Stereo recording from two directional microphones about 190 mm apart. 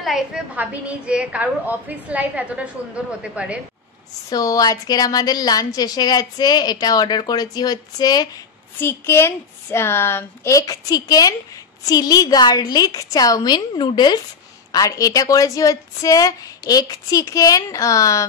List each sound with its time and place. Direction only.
0.0 s a woman's voice: 5° right (ahead or behind)
4.3 s a woman's voice: 20° left (ahead or behind)